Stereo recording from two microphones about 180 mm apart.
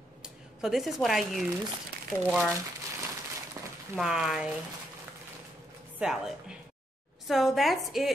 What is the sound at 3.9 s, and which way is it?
Speech, 5° right (ahead or behind).